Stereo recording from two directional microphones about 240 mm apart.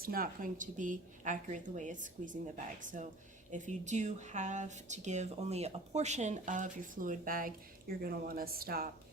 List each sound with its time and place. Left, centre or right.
0.0 s speech: right
3.5 s speech: right